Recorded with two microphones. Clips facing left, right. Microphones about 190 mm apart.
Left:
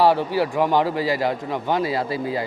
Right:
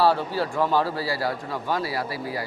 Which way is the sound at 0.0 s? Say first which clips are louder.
Left 4 dB; 15° left (ahead or behind).